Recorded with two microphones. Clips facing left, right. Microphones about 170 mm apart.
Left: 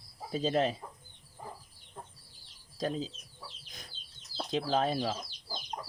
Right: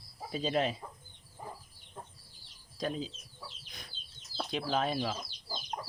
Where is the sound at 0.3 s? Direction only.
45° left (ahead or behind).